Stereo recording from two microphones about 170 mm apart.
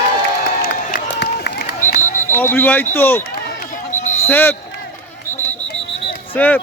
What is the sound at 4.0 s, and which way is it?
Basketball bounce, 45° left (ahead or behind).